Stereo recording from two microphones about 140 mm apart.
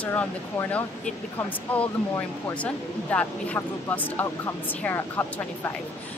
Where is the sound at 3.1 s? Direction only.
10° left (ahead or behind).